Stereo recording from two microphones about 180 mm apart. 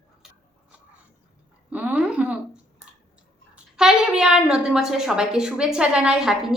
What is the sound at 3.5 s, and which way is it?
A woman's voice, 5° right (ahead or behind).